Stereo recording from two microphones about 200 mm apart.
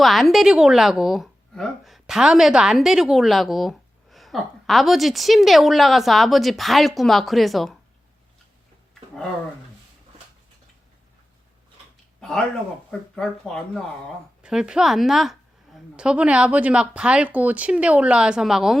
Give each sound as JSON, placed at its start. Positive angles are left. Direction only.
{"t": 0.0, "sound": "speech", "side_deg": 0}
{"t": 12.2, "sound": "speech", "side_deg": 5}